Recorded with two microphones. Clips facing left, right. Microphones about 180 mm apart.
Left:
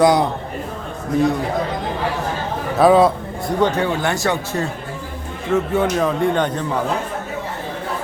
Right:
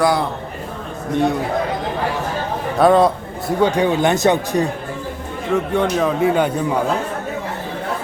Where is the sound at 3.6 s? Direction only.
15° right (ahead or behind).